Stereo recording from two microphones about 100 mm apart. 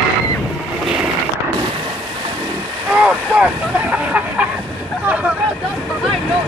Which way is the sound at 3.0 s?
15° right (ahead or behind).